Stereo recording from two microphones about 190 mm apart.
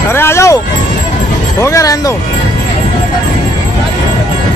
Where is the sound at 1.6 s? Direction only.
15° left (ahead or behind).